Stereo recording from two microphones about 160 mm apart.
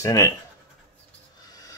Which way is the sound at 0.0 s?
20° left (ahead or behind).